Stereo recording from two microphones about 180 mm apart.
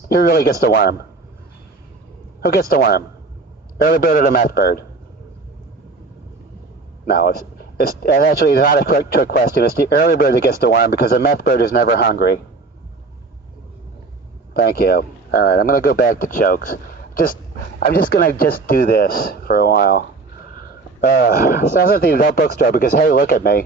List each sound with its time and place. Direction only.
0.1 s speech: 60° left (ahead or behind)
2.4 s speech: 60° left (ahead or behind)
7.1 s speech: 60° left (ahead or behind)
14.5 s speech: 60° left (ahead or behind)